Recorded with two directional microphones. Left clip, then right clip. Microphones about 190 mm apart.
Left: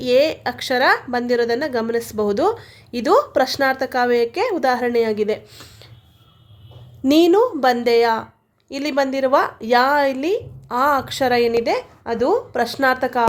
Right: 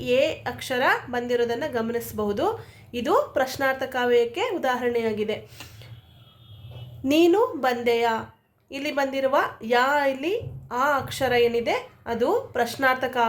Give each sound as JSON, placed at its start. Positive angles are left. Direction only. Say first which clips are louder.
{"t": 0.0, "sound": "a woman's voice", "louder": "left 6 dB", "side_deg": 40}
{"t": 7.0, "sound": "a woman's voice", "louder": "left 5 dB", "side_deg": 40}